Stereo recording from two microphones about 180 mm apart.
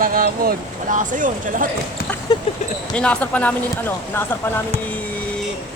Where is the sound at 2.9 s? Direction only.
5° left (ahead or behind).